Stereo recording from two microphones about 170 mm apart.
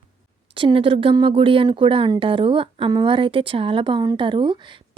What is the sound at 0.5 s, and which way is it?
Speech, 30° right (ahead or behind).